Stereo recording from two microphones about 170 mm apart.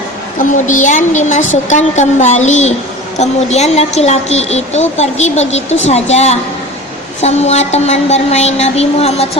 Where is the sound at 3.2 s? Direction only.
40° left (ahead or behind).